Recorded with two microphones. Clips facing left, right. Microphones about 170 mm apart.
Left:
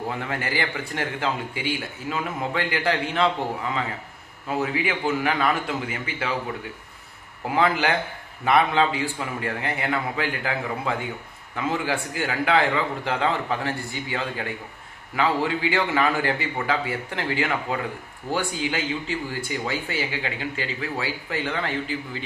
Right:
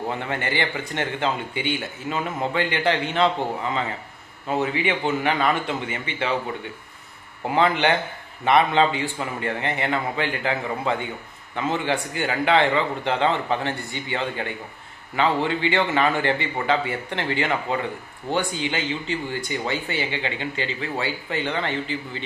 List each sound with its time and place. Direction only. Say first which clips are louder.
0.1 s speech: right 1 dB; centre (ahead or behind)
4.6 s speech: right 1 dB; centre (ahead or behind)
7.4 s speech: right 2 dB; centre (ahead or behind)